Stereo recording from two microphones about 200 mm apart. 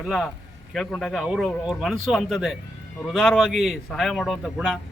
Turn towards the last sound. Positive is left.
turn(degrees=0)  # may be behind; listen again after turning